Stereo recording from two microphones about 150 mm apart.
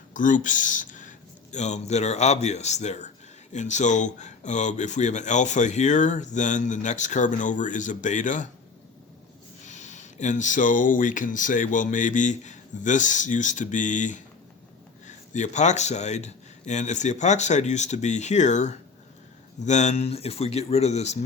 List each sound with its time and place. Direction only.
0.1 s speech: 60° left (ahead or behind)
9.6 s speech: 50° left (ahead or behind)